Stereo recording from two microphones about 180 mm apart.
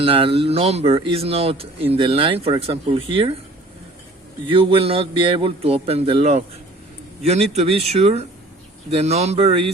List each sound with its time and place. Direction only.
0.0 s speech: 30° right (ahead or behind)
4.4 s speech: 30° right (ahead or behind)